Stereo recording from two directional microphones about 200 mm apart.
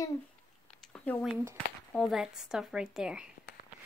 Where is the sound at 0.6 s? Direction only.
5° left (ahead or behind).